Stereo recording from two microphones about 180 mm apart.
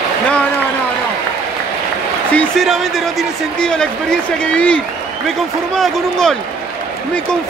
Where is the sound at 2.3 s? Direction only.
Centre (ahead or behind).